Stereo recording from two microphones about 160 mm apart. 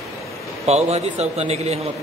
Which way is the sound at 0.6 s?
40° right (ahead or behind).